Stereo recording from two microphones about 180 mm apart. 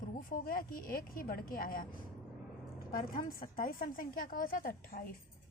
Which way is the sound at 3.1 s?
50° left (ahead or behind).